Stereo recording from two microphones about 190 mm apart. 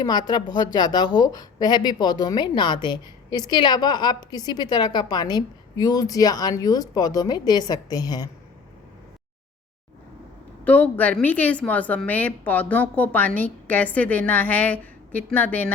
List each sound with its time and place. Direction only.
0.0 s a woman's voice: 20° left (ahead or behind)
10.6 s a woman's voice: 10° left (ahead or behind)